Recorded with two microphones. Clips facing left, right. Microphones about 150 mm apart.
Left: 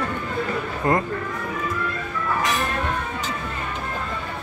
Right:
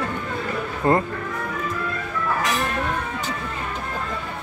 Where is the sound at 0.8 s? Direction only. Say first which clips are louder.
Right 2 dB; 30° right (ahead or behind).